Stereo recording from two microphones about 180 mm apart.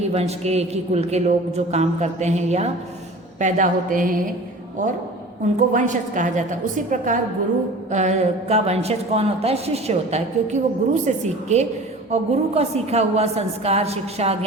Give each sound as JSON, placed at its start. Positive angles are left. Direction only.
{"t": 0.1, "sound": "a woman's voice", "side_deg": -35}
{"t": 5.5, "sound": "a woman's voice", "side_deg": -45}